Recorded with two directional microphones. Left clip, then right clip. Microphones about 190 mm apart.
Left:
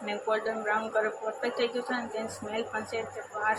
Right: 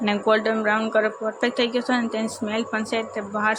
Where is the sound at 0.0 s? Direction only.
50° right (ahead or behind).